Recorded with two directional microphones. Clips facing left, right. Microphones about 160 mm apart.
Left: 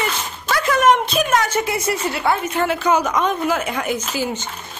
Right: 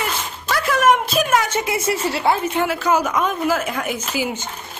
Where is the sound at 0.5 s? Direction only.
5° right (ahead or behind).